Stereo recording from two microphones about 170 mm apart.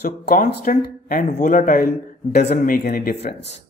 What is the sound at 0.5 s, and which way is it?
Speech, 65° left (ahead or behind).